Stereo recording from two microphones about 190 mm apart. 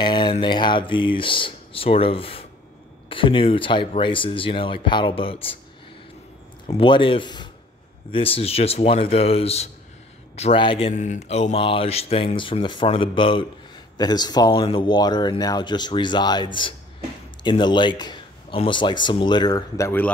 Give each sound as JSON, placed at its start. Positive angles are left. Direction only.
{"t": 0.0, "sound": "speech", "side_deg": 25}
{"t": 6.8, "sound": "speech", "side_deg": 25}